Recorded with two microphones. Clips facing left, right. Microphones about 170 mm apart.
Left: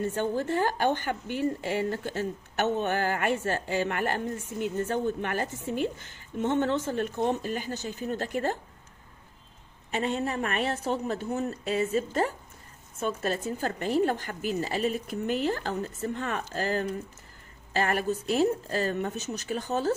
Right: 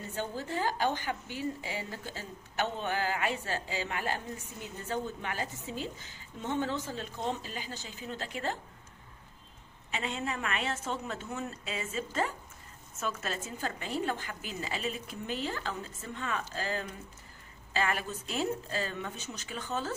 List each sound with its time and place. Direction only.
0.0 s a woman's voice: 55° left (ahead or behind)
9.8 s speech: 45° left (ahead or behind)
13.0 s speech: 35° left (ahead or behind)